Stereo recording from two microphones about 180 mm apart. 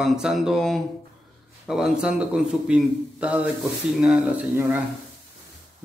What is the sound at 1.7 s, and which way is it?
A man's voice, 5° right (ahead or behind).